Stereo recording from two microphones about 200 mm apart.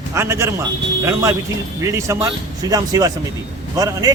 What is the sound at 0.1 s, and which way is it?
Speech, 15° right (ahead or behind).